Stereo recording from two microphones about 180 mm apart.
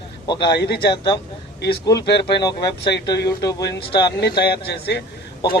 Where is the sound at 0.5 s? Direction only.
65° left (ahead or behind).